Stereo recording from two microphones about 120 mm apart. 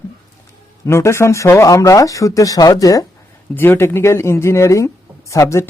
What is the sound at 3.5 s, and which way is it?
Speech, 20° left (ahead or behind).